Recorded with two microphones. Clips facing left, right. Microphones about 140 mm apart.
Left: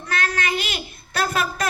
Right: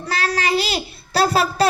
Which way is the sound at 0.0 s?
35° right (ahead or behind).